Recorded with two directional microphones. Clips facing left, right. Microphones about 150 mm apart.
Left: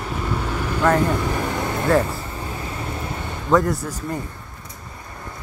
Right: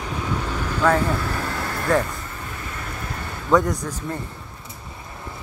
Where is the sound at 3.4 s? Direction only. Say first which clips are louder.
Left 1 dB; centre (ahead or behind).